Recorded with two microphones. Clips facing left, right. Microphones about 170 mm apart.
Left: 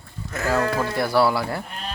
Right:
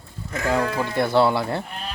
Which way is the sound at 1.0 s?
25° right (ahead or behind).